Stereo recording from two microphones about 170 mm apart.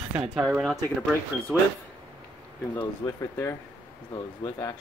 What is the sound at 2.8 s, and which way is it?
Speech, 15° left (ahead or behind).